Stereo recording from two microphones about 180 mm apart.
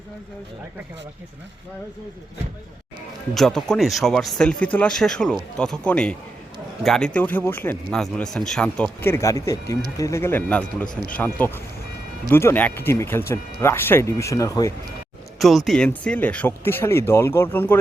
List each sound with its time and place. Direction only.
3.3 s speech: centre (ahead or behind); by 14.7 s 20° left (ahead or behind)
15.4 s speech: centre (ahead or behind)